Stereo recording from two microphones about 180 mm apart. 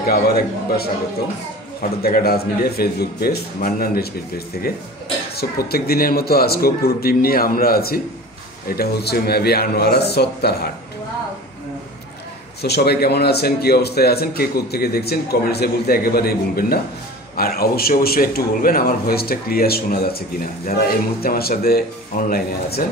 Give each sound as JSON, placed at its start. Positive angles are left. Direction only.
{"t": 0.0, "sound": "a man's voice", "side_deg": 60}
{"t": 5.3, "sound": "a man's voice", "side_deg": 60}
{"t": 12.6, "sound": "a man's voice", "side_deg": 65}